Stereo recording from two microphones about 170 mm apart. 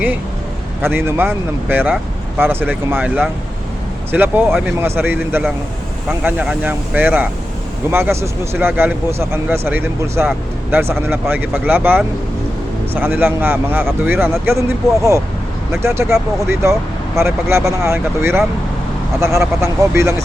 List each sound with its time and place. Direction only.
0.8 s speech: 15° right (ahead or behind)
15.7 s speech: 15° right (ahead or behind)